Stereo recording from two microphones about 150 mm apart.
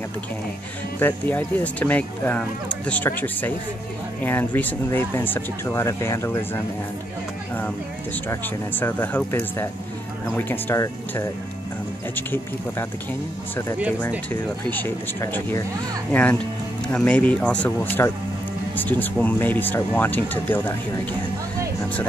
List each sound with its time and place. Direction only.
0.9 s speech: 10° left (ahead or behind)
8.3 s speech: 15° left (ahead or behind)
14.3 s speech: 10° left (ahead or behind)